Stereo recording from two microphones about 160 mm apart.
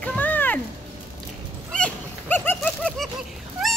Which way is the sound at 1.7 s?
10° left (ahead or behind).